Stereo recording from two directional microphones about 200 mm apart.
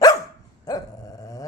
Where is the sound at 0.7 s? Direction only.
15° left (ahead or behind).